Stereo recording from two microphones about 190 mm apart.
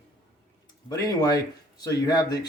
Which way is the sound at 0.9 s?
20° left (ahead or behind).